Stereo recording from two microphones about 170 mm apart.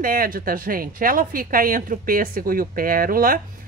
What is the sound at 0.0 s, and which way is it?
Speech, 55° right (ahead or behind).